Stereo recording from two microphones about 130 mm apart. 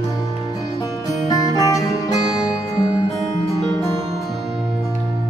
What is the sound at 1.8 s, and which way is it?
Music, 5° right (ahead or behind).